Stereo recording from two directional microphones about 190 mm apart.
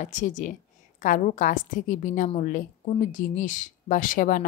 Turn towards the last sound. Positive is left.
turn(degrees=45)  # may be behind; listen again after turning